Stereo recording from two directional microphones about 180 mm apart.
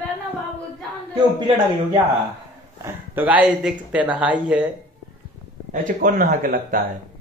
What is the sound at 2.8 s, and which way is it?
Speech, 10° right (ahead or behind).